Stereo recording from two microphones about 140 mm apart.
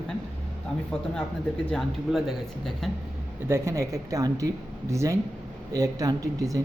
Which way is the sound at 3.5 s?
20° right (ahead or behind).